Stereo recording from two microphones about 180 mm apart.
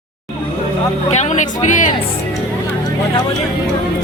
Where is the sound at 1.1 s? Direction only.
40° left (ahead or behind).